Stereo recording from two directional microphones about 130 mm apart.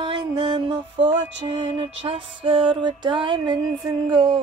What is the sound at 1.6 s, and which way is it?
Music, 50° right (ahead or behind).